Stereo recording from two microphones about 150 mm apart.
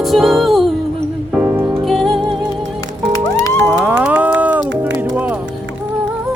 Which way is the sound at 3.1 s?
20° left (ahead or behind).